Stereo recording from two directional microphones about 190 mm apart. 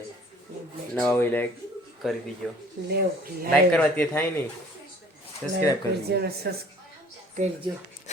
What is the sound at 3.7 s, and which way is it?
Speech, 5° left (ahead or behind).